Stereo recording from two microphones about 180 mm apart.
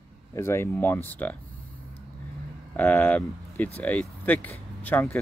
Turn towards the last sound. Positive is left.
turn(degrees=10)  # may be behind; listen again after turning